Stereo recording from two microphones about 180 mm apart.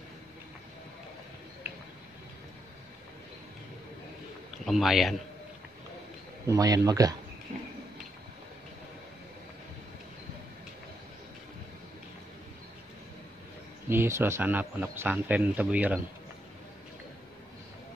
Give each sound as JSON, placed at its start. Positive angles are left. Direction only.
{"t": 4.6, "sound": "a man's voice", "side_deg": 0}
{"t": 6.4, "sound": "speech", "side_deg": -20}
{"t": 13.8, "sound": "speech", "side_deg": -15}